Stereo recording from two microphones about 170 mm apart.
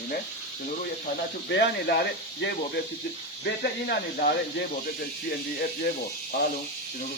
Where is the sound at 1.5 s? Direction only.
85° left.